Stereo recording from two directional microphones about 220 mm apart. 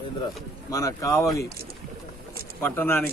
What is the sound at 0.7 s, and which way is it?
Speech, 15° left (ahead or behind).